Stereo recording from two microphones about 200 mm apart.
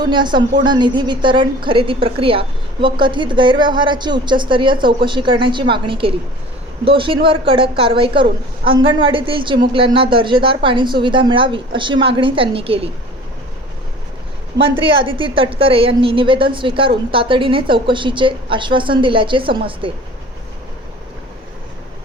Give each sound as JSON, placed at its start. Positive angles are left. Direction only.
{"t": 0.0, "sound": "a woman's voice", "side_deg": -20}
{"t": 14.6, "sound": "a woman's voice", "side_deg": -25}